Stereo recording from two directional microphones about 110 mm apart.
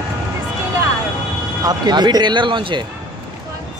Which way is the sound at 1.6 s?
40° right (ahead or behind).